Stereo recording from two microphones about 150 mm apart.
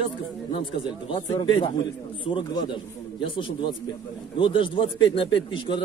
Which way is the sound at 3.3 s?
35° left (ahead or behind).